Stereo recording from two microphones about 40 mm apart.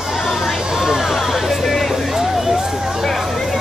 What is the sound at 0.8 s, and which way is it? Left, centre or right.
Vehicle, centre.